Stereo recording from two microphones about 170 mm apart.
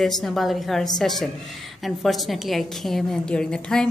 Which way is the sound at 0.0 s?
Centre (ahead or behind).